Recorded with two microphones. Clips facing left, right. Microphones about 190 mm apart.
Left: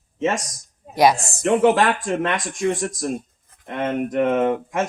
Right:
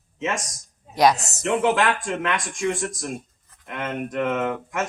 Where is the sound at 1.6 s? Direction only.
35° left (ahead or behind).